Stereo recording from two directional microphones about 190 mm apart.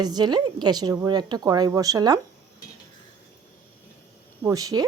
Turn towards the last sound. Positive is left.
turn(degrees=-20)  # may be behind; listen again after turning